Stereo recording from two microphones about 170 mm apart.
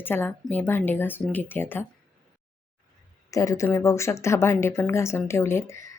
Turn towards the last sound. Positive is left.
turn(degrees=20)  # may be behind; listen again after turning